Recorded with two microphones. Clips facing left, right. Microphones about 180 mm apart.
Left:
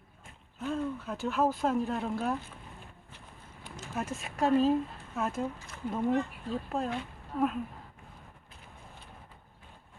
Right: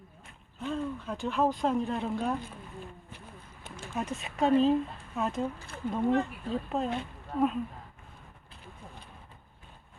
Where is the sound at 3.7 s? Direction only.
25° right (ahead or behind).